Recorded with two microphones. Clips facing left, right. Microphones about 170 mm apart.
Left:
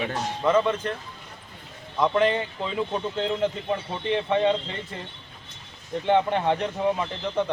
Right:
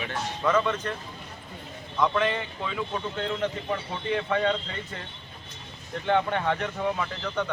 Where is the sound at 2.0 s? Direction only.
30° left (ahead or behind).